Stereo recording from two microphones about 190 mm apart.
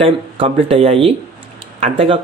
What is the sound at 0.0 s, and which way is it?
Speech, 30° right (ahead or behind).